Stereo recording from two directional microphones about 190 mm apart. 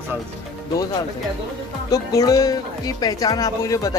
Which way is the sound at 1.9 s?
20° left (ahead or behind).